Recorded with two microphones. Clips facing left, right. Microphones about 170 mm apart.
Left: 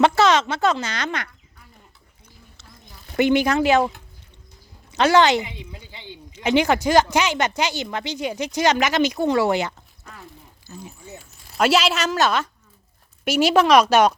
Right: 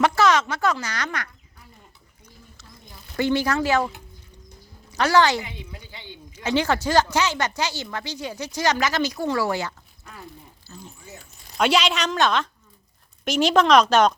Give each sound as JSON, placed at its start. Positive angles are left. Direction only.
{"t": 0.0, "sound": "a woman's voice", "side_deg": 25}
{"t": 3.2, "sound": "a woman's voice", "side_deg": 20}
{"t": 4.9, "sound": "a woman's voice", "side_deg": 20}
{"t": 11.2, "sound": "speech", "side_deg": 5}